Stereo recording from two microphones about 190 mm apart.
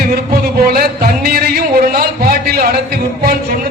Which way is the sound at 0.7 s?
55° right (ahead or behind).